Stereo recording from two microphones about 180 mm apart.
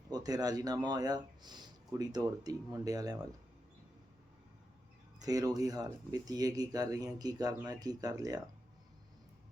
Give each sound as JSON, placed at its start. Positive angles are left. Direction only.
{"t": 0.1, "sound": "speech", "side_deg": -20}
{"t": 5.2, "sound": "speech", "side_deg": -20}